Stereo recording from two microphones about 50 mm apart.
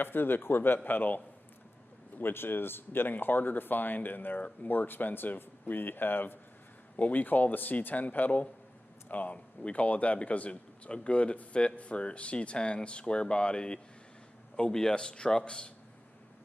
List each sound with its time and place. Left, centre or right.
0.0 s a man's voice: left
7.0 s speech: left; by 15.7 s centre